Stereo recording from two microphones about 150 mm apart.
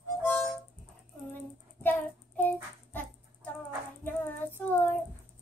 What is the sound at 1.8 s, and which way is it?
Child singing, 15° left (ahead or behind).